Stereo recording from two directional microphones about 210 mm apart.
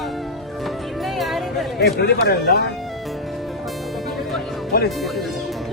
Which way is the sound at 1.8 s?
50° left (ahead or behind).